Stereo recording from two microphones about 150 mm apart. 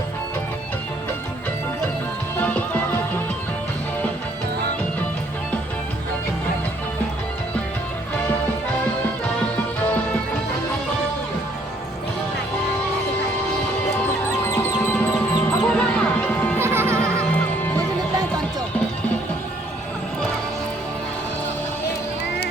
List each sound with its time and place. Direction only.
2.4 s music: 10° left (ahead or behind)
14.3 s music: 15° left (ahead or behind)
16.6 s music: 15° right (ahead or behind)